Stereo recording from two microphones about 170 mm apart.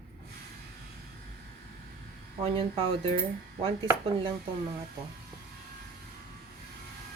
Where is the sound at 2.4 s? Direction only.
35° right (ahead or behind).